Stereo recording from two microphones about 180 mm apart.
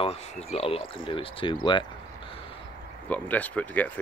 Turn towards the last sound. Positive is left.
turn(degrees=10)  # may be behind; listen again after turning